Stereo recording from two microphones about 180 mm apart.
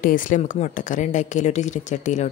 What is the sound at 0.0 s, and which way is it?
A woman's voice, 50° left (ahead or behind).